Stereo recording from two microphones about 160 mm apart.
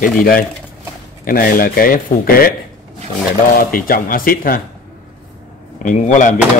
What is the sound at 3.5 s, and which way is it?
Speech, 65° left (ahead or behind).